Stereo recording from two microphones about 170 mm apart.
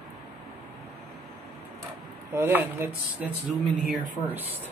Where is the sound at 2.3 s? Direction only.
10° right (ahead or behind).